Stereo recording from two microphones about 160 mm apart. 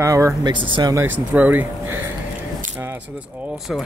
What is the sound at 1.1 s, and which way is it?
Speech, 10° right (ahead or behind).